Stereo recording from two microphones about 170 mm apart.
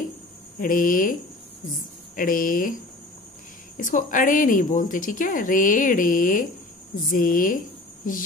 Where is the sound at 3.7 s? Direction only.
50° left (ahead or behind).